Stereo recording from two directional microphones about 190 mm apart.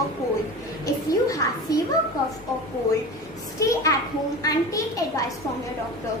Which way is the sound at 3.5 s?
15° left (ahead or behind).